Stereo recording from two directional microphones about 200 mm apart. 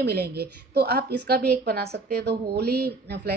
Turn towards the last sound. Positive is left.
turn(degrees=-55)  # may be behind; listen again after turning